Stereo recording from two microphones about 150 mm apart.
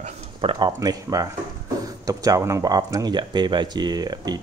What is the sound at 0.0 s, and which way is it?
Speech, 35° right (ahead or behind).